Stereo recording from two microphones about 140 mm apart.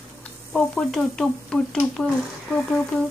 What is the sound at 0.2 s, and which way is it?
Speech, 5° left (ahead or behind).